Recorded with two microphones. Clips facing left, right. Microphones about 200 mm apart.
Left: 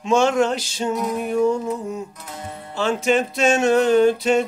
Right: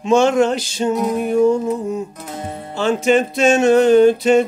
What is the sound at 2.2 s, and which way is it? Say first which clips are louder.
Music: right 6 dB; 25° right (ahead or behind).